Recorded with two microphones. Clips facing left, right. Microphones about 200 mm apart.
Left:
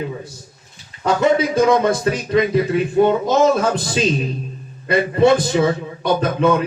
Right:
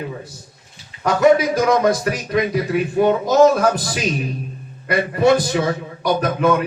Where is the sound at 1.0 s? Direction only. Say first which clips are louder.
Right 2 dB; 25° left (ahead or behind).